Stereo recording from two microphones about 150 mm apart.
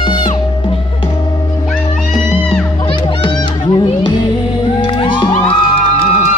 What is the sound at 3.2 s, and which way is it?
Children playing, 35° left (ahead or behind).